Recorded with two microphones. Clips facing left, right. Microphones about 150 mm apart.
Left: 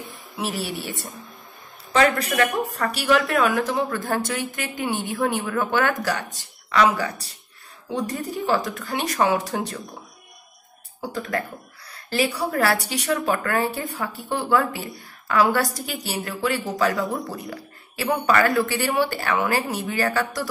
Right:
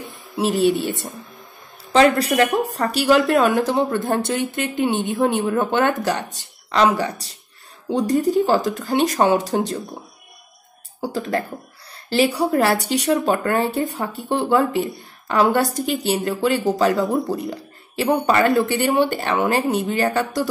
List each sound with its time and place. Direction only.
0.4 s speech: 25° right (ahead or behind)
11.1 s a woman's voice: 30° right (ahead or behind)